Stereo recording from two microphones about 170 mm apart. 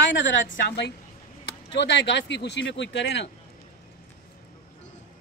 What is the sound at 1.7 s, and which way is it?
A man's voice, 90° left.